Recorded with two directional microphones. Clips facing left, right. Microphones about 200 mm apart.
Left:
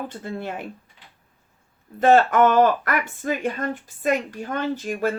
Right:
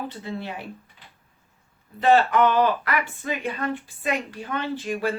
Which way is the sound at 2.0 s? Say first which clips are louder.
Left 3 dB; 45° left (ahead or behind).